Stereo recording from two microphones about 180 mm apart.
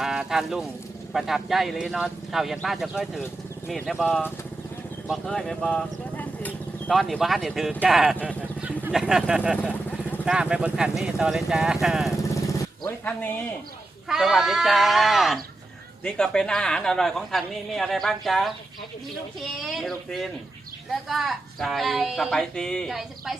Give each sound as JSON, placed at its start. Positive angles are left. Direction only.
{"t": 0.0, "sound": "speech", "side_deg": 0}
{"t": 14.1, "sound": "speech", "side_deg": 0}